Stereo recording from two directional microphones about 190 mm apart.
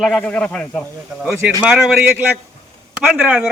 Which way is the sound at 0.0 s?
5° left (ahead or behind).